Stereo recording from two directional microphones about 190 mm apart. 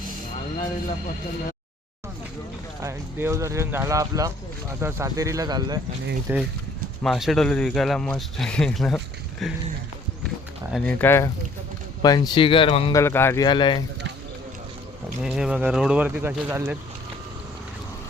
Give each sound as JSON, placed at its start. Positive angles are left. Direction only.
{"t": 2.8, "sound": "speech", "side_deg": -15}
{"t": 6.3, "sound": "speech", "side_deg": -10}
{"t": 7.0, "sound": "speech", "side_deg": 0}
{"t": 10.7, "sound": "speech", "side_deg": 5}
{"t": 12.9, "sound": "speech", "side_deg": 15}
{"t": 15.2, "sound": "speech", "side_deg": -5}